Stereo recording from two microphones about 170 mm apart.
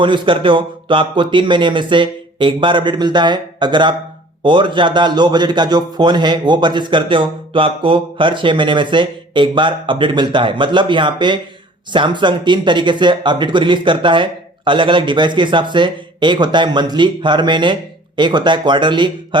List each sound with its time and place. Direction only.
0.0 s a man's voice: 30° right (ahead or behind)